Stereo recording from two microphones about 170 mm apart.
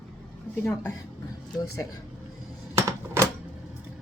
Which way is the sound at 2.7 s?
15° right (ahead or behind).